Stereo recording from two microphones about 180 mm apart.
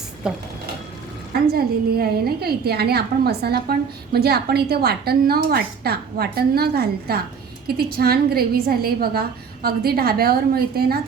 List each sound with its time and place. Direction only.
0.2 s speech: 5° right (ahead or behind)
1.5 s a woman's voice: 60° right (ahead or behind)